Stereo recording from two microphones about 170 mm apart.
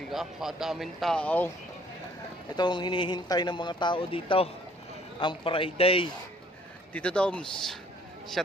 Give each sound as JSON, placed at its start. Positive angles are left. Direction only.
{"t": 0.1, "sound": "a man's voice", "side_deg": 0}
{"t": 2.6, "sound": "a man's voice", "side_deg": 25}
{"t": 6.9, "sound": "speech", "side_deg": 5}